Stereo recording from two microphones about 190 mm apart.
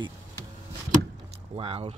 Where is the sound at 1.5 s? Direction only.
30° right (ahead or behind).